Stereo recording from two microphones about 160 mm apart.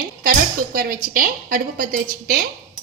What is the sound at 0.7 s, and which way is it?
A woman's voice, 65° right (ahead or behind).